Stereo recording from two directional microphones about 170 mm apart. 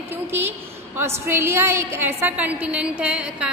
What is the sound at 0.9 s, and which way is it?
A woman's voice, 15° right (ahead or behind).